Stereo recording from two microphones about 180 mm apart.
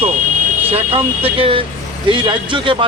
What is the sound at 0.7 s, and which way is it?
Speech, 35° right (ahead or behind).